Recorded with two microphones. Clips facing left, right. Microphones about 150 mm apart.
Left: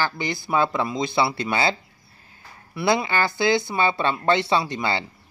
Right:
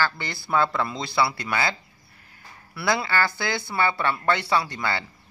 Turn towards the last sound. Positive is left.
turn(degrees=20)  # may be behind; listen again after turning